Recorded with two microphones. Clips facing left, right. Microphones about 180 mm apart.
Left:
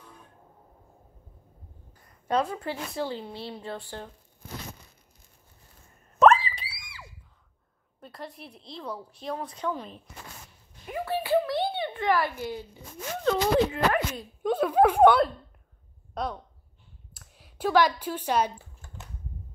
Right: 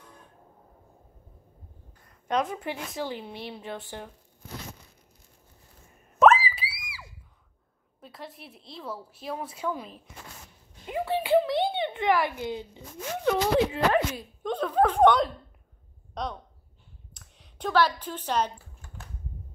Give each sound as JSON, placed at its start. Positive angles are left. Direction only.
{"t": 2.3, "sound": "speech", "side_deg": -15}
{"t": 6.1, "sound": "screaming", "side_deg": -5}
{"t": 8.0, "sound": "speech", "side_deg": 0}
{"t": 10.9, "sound": "speech", "side_deg": -20}
{"t": 14.4, "sound": "speech", "side_deg": 10}
{"t": 17.1, "sound": "a sound", "side_deg": 5}